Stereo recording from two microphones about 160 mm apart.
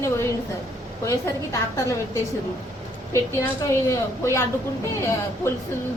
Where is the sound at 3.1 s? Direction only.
20° left (ahead or behind).